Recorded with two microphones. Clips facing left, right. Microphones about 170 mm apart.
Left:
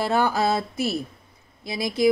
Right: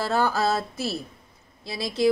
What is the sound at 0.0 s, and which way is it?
Speech, 15° left (ahead or behind).